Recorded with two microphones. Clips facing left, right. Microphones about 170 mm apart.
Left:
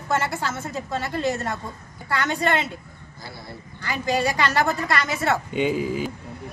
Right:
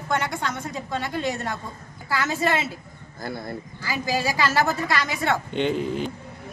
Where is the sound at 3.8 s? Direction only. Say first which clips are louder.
Left 3 dB; 5° right (ahead or behind).